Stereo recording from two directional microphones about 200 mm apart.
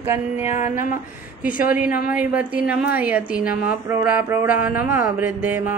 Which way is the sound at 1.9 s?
45° left (ahead or behind).